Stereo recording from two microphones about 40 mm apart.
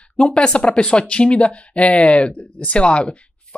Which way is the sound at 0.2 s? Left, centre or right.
Left.